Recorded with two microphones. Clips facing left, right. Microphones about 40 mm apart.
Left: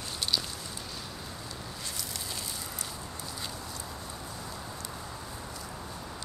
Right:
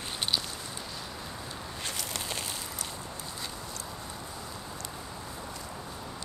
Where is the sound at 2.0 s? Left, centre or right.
Right.